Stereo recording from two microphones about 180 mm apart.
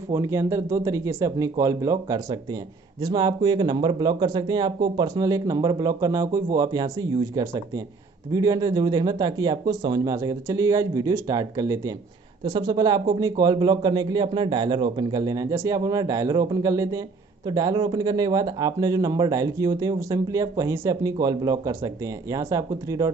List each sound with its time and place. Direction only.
0.1 s speech: 15° right (ahead or behind)